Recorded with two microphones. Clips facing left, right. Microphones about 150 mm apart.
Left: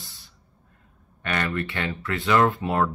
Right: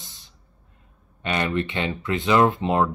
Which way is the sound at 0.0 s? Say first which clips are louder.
Left 1 dB; 20° right (ahead or behind).